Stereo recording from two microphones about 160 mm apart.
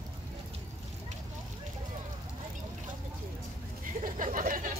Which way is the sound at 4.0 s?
55° right (ahead or behind).